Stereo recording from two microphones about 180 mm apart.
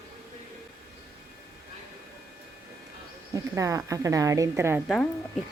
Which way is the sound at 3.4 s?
20° right (ahead or behind).